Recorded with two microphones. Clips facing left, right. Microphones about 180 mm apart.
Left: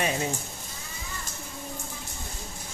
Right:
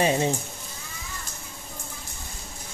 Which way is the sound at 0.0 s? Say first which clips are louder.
Right 6 dB; 30° right (ahead or behind).